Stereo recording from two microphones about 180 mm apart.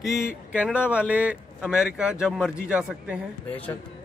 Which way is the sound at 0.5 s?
5° right (ahead or behind).